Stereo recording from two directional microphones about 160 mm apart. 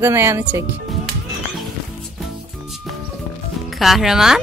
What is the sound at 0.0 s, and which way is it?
Speech, 15° right (ahead or behind).